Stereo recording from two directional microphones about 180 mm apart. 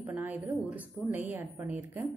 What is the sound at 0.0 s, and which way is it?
A woman's voice, 10° right (ahead or behind).